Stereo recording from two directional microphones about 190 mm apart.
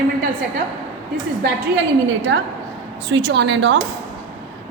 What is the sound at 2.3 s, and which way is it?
A woman's voice, 70° right (ahead or behind).